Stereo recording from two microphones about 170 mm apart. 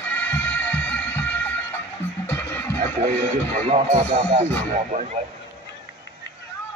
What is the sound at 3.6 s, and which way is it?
Speech, 40° right (ahead or behind).